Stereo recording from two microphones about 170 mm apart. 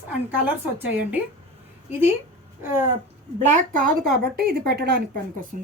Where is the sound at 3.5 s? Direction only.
50° right (ahead or behind).